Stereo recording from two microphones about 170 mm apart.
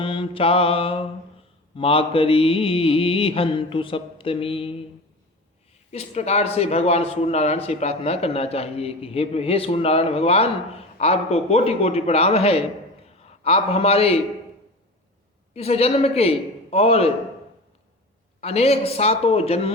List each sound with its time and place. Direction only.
0.0 s speech: 30° left (ahead or behind)
5.9 s speech: 40° left (ahead or behind)
15.5 s speech: 35° left (ahead or behind)
18.3 s speech: 40° left (ahead or behind)